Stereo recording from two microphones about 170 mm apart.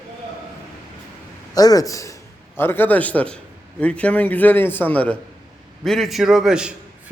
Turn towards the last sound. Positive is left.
turn(degrees=-5)  # may be behind; listen again after turning